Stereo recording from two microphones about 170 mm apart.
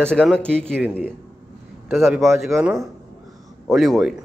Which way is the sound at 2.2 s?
Centre (ahead or behind).